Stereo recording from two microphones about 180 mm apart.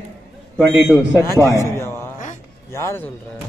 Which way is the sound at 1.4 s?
15° left (ahead or behind).